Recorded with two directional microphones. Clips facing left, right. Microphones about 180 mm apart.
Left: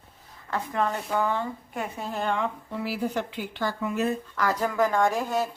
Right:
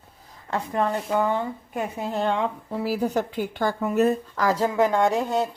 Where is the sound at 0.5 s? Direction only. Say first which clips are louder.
Right 3 dB; 25° right (ahead or behind).